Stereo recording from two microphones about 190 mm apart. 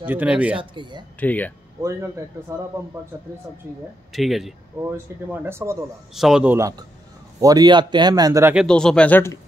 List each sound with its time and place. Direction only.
0.0 s speech: 10° right (ahead or behind)
0.6 s speech: 25° right (ahead or behind)
1.2 s speech: 10° left (ahead or behind)
1.8 s speech: 15° right (ahead or behind)
4.1 s speech: centre (ahead or behind)
4.9 s speech: 10° right (ahead or behind)
6.1 s speech: centre (ahead or behind)
8.5 s speech: 5° left (ahead or behind)